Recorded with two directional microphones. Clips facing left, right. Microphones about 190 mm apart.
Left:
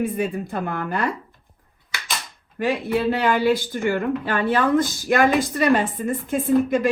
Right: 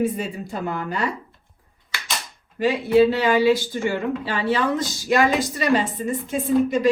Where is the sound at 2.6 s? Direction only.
55° left (ahead or behind).